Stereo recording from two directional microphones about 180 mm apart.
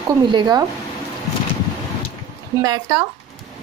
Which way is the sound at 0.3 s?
25° right (ahead or behind).